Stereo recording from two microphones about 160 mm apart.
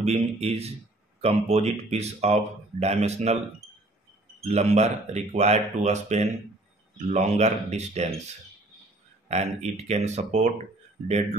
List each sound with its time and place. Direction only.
0.0 s speech: 40° right (ahead or behind)
4.4 s speech: 45° right (ahead or behind)
9.3 s speech: 45° right (ahead or behind)